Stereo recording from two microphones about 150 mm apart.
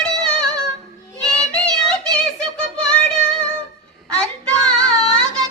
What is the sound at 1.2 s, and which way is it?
Child singing, 5° left (ahead or behind).